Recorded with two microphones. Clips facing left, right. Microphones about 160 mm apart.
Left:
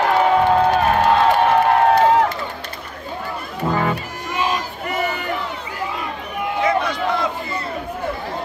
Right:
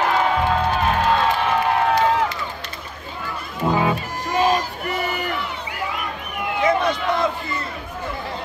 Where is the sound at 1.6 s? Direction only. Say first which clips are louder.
Left 4 dB; 50° left (ahead or behind).